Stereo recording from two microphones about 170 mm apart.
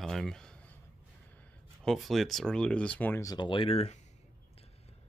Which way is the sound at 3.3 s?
30° left (ahead or behind).